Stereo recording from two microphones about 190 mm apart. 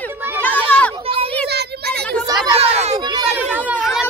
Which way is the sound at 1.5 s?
60° right (ahead or behind).